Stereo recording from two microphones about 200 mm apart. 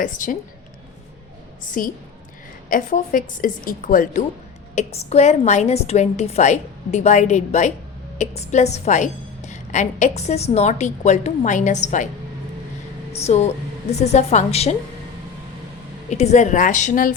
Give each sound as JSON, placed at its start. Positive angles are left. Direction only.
{"t": 0.0, "sound": "a woman's voice", "side_deg": 40}
{"t": 1.8, "sound": "a woman's voice", "side_deg": 45}
{"t": 4.7, "sound": "a woman's voice", "side_deg": 35}
{"t": 13.1, "sound": "a woman's voice", "side_deg": 30}
{"t": 16.0, "sound": "a woman's voice", "side_deg": 35}